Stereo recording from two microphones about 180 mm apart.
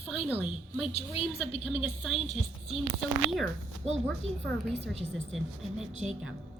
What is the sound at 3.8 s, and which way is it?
Speech, 35° right (ahead or behind).